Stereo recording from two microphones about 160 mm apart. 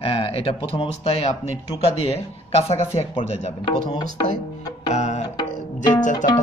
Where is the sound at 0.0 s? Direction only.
35° left (ahead or behind).